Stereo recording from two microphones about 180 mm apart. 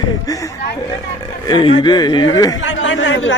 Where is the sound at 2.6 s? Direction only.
90° left.